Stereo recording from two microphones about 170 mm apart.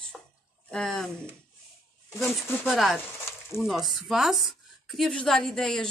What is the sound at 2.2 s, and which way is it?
Speech, 15° left (ahead or behind).